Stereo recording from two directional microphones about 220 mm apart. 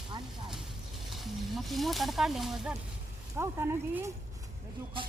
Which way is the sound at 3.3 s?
10° right (ahead or behind).